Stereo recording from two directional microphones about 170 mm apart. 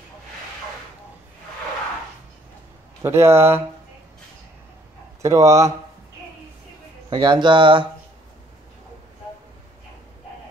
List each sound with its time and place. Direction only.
3.0 s speech: 15° right (ahead or behind)
5.2 s speech: 20° right (ahead or behind)
7.1 s a man's voice: 25° right (ahead or behind)